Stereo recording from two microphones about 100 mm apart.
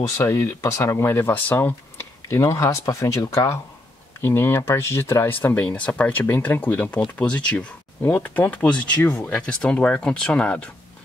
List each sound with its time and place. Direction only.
0.2 s speech: 30° left (ahead or behind); by 10.7 s 10° left (ahead or behind)